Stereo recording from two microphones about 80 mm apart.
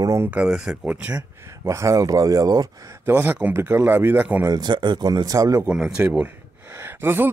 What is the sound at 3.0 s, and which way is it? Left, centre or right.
Speech, right.